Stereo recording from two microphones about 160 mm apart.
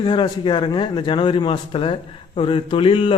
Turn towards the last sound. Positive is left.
turn(degrees=35)  # may be behind; listen again after turning